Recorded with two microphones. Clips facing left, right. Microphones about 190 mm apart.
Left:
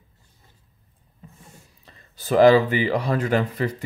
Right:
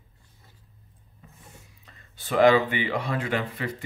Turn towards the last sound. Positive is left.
turn(degrees=40)  # may be behind; listen again after turning